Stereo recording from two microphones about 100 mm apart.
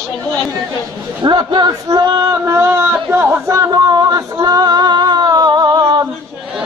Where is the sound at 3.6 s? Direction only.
45° right (ahead or behind).